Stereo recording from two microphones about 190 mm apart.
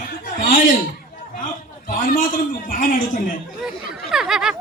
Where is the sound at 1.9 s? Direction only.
45° left (ahead or behind).